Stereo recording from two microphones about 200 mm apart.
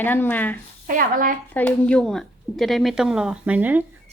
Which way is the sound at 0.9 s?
45° right (ahead or behind).